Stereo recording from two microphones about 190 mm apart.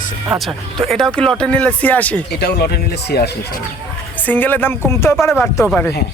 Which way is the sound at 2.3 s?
55° left (ahead or behind).